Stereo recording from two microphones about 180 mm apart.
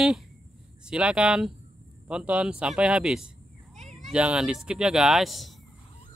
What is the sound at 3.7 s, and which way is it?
Cat, 40° right (ahead or behind).